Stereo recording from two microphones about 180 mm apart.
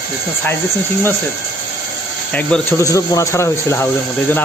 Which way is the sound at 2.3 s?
10° left (ahead or behind).